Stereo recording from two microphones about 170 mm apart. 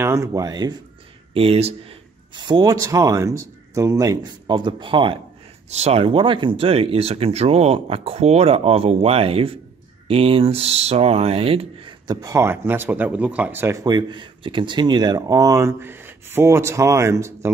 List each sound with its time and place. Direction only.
0.0 s speech: 15° right (ahead or behind)
1.3 s speech: 35° right (ahead or behind); by 17.5 s 15° right (ahead or behind)